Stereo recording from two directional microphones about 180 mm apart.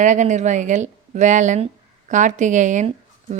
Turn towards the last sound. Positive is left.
turn(degrees=-45)  # may be behind; listen again after turning